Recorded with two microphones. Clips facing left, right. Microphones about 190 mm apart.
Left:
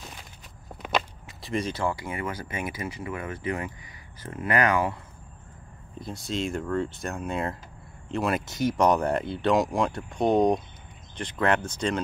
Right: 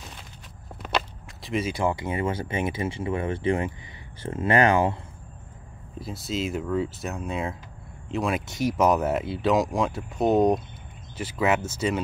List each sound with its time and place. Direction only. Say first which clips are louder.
1.4 s speech: right 1 dB; centre (ahead or behind)
1.7 s speech: right 3 dB; 15° right (ahead or behind)
5.9 s speech: right 1 dB; 5° right (ahead or behind)